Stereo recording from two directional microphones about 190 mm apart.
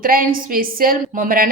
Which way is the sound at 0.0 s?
50° right (ahead or behind).